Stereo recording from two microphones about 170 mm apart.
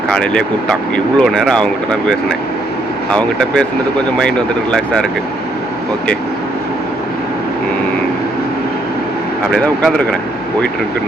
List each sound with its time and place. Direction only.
0.1 s speech: 5° left (ahead or behind)
9.5 s speech: 5° left (ahead or behind)